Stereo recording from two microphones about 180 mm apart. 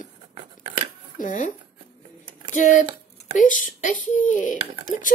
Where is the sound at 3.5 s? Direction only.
45° left (ahead or behind).